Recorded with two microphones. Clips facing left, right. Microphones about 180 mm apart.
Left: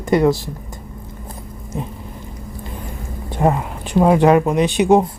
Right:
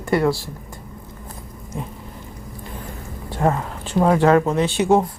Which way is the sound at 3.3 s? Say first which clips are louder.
Left 3 dB; 15° left (ahead or behind).